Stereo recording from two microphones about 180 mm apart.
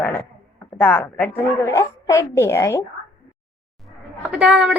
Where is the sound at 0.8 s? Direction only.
10° left (ahead or behind).